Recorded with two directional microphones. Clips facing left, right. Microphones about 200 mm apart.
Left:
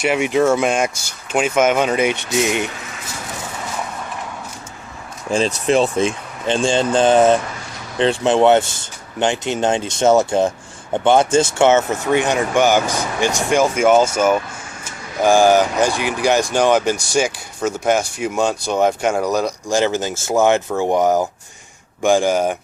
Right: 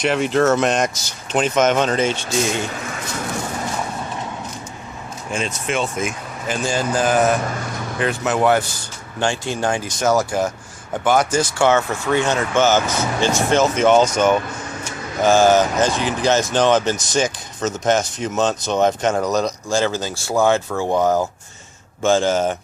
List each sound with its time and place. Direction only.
0.0 s speech: 10° left (ahead or behind)
5.3 s speech: 35° left (ahead or behind); by 22.5 s 10° left (ahead or behind)